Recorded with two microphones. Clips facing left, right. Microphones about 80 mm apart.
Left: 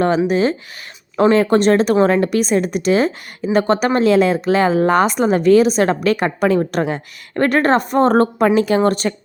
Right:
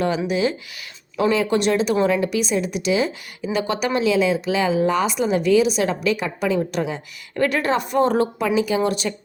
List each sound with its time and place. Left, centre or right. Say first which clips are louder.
0.3 s speech: left 5 dB; left